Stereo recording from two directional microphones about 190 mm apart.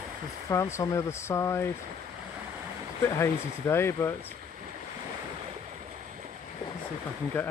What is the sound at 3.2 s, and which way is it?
Speech, 10° left (ahead or behind).